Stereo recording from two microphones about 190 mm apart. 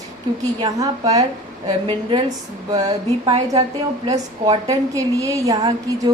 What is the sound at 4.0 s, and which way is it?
A woman's voice, 20° right (ahead or behind).